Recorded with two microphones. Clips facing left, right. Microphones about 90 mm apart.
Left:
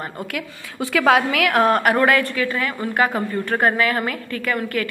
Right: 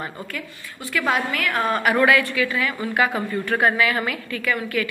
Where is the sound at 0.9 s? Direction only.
90° left; by 1.8 s 75° left (ahead or behind).